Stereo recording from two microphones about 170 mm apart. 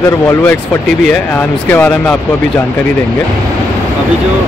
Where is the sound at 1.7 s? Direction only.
5° left (ahead or behind).